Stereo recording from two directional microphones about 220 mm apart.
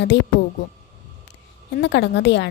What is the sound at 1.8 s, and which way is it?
Speech, 55° left (ahead or behind).